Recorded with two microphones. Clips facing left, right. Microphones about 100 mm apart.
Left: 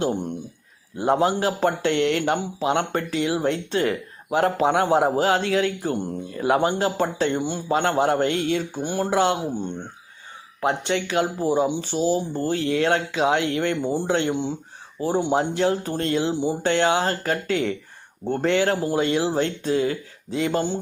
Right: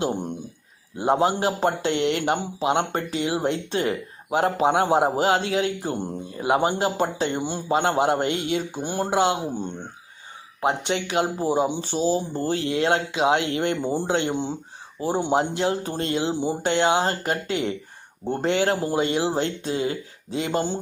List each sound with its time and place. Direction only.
0.0 s speech: 25° right (ahead or behind)
6.4 s a man's voice: 15° right (ahead or behind)
10.6 s speech: 20° right (ahead or behind)